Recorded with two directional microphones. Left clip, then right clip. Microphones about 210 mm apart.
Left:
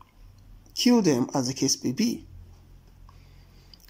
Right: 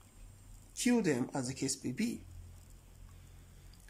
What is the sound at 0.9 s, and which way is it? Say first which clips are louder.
Speech: left 10 dB; 10° left (ahead or behind).